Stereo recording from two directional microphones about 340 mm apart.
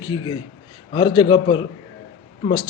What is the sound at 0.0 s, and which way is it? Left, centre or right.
A man's voice, centre.